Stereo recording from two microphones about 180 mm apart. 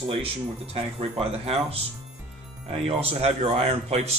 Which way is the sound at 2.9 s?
35° right (ahead or behind).